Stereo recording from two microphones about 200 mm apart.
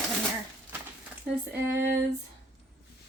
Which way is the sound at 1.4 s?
10° right (ahead or behind).